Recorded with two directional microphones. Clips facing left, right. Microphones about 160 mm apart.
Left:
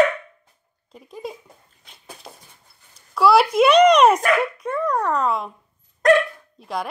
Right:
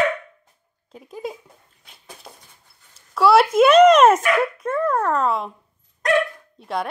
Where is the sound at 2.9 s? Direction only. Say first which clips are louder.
Right 1 dB; centre (ahead or behind).